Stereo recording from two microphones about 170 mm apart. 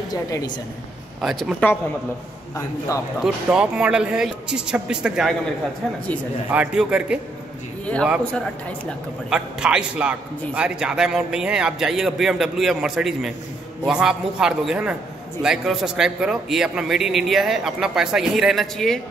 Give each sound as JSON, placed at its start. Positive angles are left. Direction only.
{"t": 0.1, "sound": "a woman's voice", "side_deg": 20}
{"t": 1.2, "sound": "a man's voice", "side_deg": 0}
{"t": 3.2, "sound": "a man's voice", "side_deg": -5}
{"t": 6.5, "sound": "a man's voice", "side_deg": -5}
{"t": 7.8, "sound": "a sound", "side_deg": 5}
{"t": 8.8, "sound": "a man's voice", "side_deg": -5}